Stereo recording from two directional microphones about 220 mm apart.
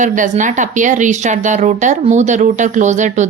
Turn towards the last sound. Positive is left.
turn(degrees=-35)  # may be behind; listen again after turning